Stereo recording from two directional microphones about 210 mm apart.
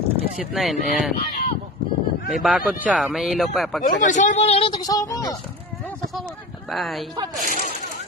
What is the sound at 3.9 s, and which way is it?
Speech, 35° left (ahead or behind).